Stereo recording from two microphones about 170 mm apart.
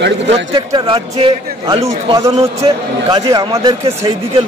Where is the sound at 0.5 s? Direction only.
30° right (ahead or behind).